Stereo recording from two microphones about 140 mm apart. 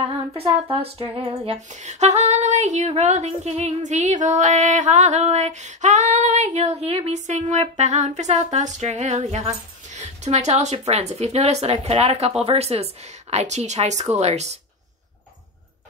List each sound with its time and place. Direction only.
0.3 s speech: 40° right (ahead or behind)
1.7 s speech: 55° right (ahead or behind)